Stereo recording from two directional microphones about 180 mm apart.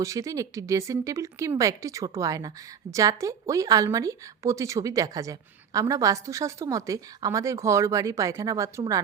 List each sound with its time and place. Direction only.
0.0 s a woman's voice: 20° right (ahead or behind)